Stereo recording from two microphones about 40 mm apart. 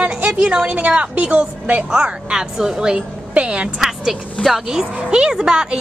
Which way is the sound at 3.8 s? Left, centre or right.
Centre.